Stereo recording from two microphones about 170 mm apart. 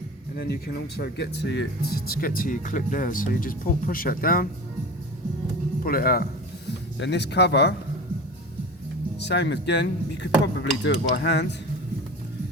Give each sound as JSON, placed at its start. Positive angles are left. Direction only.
{"t": 0.3, "sound": "speech", "side_deg": 70}
{"t": 5.8, "sound": "speech", "side_deg": 60}
{"t": 6.7, "sound": "speech", "side_deg": 90}
{"t": 9.1, "sound": "speech", "side_deg": 85}
{"t": 10.4, "sound": "dishes", "side_deg": 90}